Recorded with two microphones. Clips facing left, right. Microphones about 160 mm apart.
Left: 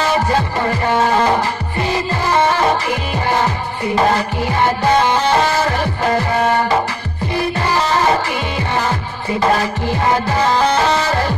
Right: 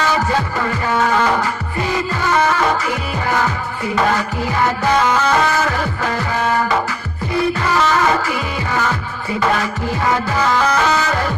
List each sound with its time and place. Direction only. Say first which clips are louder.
0.0 s music: left 2 dB; 30° left (ahead or behind)
9.4 s music: left 2 dB; 35° left (ahead or behind)